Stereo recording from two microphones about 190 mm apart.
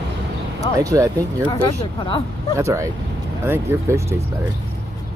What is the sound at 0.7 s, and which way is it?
Speech, 20° right (ahead or behind).